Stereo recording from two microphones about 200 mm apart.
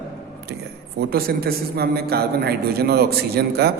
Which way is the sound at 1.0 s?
50° right (ahead or behind).